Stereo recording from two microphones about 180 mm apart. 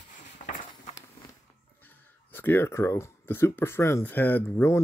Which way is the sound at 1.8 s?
10° left (ahead or behind).